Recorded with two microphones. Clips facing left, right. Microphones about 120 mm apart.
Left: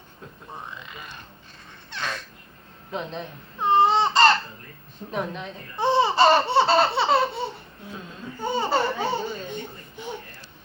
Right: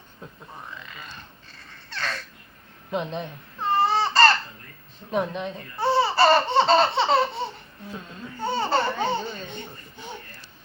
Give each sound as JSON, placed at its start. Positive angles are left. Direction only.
{"t": 1.9, "sound": "a sound", "side_deg": 15}
{"t": 2.9, "sound": "speech", "side_deg": 0}
{"t": 3.6, "sound": "baby cry", "side_deg": 20}
{"t": 5.1, "sound": "speech", "side_deg": 0}
{"t": 5.7, "sound": "laughter", "side_deg": 20}
{"t": 8.4, "sound": "laughter", "side_deg": 15}